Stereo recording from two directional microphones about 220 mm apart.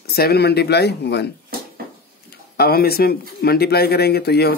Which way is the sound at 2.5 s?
45° left (ahead or behind).